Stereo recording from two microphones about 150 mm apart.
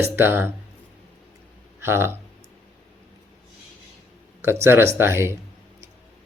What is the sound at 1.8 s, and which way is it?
Speech, 15° right (ahead or behind).